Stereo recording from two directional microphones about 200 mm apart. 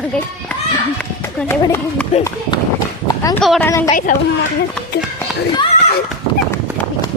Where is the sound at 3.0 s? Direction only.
15° left (ahead or behind).